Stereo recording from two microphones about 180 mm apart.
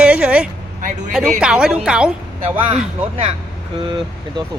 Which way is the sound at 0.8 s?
45° right (ahead or behind).